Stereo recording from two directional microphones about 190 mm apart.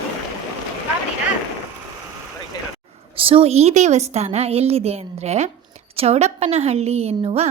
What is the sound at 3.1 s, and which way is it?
A woman's voice, 30° right (ahead or behind).